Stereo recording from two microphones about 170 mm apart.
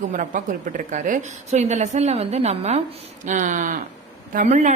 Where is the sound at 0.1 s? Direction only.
50° right (ahead or behind).